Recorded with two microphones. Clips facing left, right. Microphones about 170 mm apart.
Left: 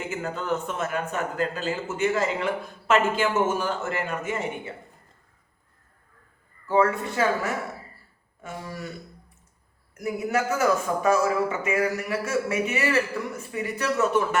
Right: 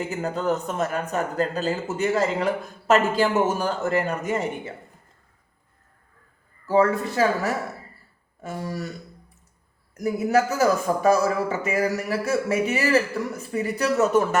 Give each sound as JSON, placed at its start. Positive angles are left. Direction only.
{"t": 0.1, "sound": "speech", "side_deg": -40}
{"t": 6.7, "sound": "speech", "side_deg": -35}
{"t": 10.0, "sound": "speech", "side_deg": -40}